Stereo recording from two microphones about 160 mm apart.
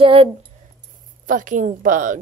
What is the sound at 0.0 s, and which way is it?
Speech, 35° right (ahead or behind).